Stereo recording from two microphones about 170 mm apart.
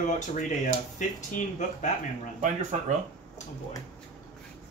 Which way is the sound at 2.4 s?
45° right (ahead or behind).